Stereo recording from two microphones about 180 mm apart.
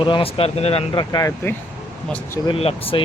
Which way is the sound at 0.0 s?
30° left (ahead or behind).